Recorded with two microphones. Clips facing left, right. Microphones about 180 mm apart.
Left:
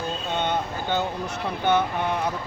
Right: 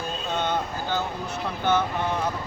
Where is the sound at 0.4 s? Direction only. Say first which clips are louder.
Left 2 dB; 20° left (ahead or behind).